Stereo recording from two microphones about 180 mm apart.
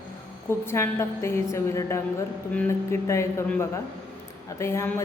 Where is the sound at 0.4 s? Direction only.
15° left (ahead or behind).